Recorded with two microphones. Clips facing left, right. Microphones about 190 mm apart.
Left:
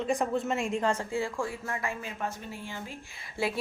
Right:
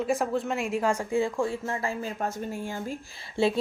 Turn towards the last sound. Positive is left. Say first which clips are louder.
# right 7 dB
turn(degrees=-25)  # may be behind; listen again after turning